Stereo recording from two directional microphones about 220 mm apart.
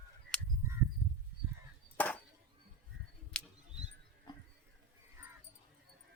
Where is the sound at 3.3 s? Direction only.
5° left (ahead or behind).